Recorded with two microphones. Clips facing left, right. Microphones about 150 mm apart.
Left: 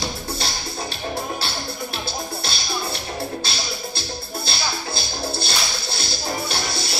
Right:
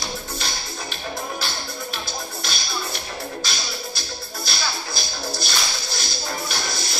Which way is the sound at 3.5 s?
30° left (ahead or behind).